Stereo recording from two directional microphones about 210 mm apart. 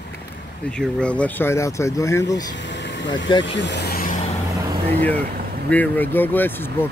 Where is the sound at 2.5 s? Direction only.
60° left (ahead or behind).